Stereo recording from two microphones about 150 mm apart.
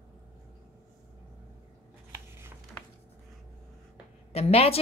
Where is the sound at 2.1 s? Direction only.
15° right (ahead or behind).